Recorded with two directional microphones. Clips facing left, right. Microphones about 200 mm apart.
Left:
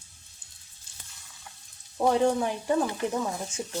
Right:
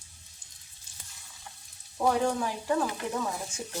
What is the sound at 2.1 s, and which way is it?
Dishes, 25° left (ahead or behind).